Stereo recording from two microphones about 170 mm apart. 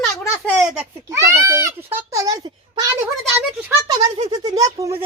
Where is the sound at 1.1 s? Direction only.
15° right (ahead or behind).